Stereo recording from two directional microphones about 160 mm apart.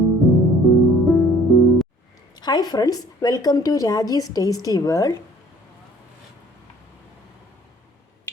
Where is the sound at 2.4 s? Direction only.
25° left (ahead or behind).